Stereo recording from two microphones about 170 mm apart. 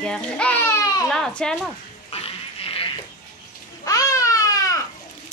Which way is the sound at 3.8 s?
20° left (ahead or behind).